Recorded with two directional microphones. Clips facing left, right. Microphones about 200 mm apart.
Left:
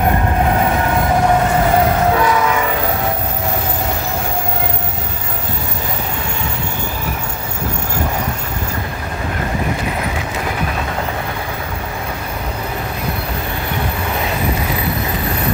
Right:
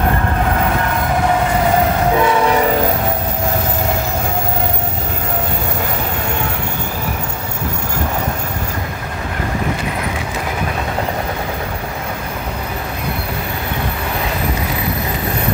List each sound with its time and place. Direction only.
2.1 s train: 25° right (ahead or behind)